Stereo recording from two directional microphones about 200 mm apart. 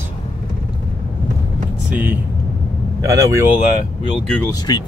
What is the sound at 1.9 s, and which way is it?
Speech, 10° right (ahead or behind).